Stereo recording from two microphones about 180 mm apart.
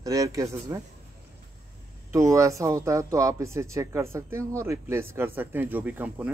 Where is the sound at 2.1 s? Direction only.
15° right (ahead or behind).